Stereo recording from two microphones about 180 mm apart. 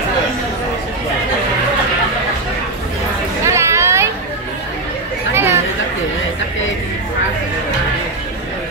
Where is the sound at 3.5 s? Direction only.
15° right (ahead or behind).